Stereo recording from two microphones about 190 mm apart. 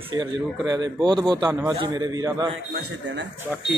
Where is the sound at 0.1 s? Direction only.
20° right (ahead or behind).